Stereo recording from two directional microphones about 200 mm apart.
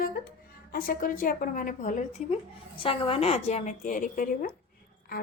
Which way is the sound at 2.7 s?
25° left (ahead or behind).